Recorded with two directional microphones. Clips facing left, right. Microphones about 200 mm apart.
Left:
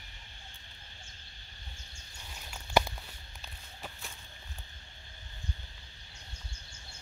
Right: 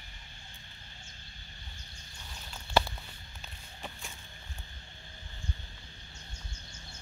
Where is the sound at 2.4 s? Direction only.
15° left (ahead or behind).